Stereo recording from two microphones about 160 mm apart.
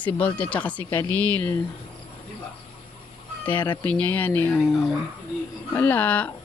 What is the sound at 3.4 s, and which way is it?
Speech, 10° left (ahead or behind).